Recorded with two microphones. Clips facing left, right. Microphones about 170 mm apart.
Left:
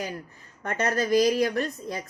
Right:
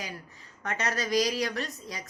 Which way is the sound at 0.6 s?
50° left (ahead or behind).